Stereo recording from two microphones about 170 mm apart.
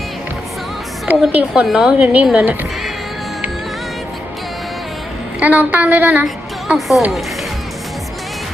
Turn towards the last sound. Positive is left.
turn(degrees=0)  # may be behind; listen again after turning